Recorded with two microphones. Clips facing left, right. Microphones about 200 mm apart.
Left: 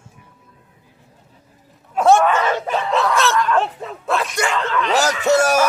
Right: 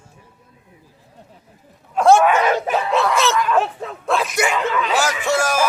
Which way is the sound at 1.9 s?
Centre (ahead or behind).